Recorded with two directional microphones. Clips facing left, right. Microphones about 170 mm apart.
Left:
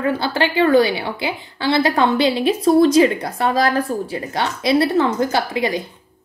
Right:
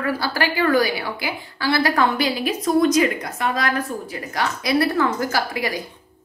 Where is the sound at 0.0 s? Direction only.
20° left (ahead or behind).